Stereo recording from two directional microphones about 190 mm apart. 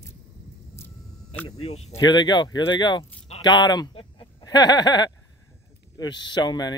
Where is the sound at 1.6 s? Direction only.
35° left (ahead or behind).